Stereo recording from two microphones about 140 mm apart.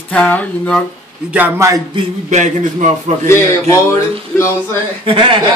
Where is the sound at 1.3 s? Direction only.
10° right (ahead or behind).